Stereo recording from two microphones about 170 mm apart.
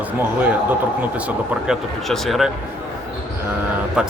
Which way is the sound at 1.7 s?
Centre (ahead or behind).